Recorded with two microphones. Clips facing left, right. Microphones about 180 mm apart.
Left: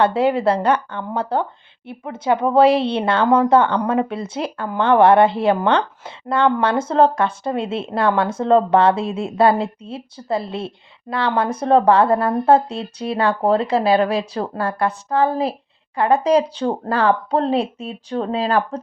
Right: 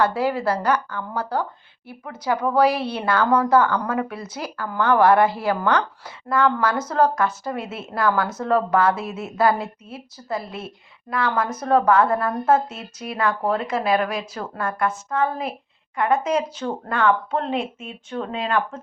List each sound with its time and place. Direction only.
0.0 s speech: 25° left (ahead or behind)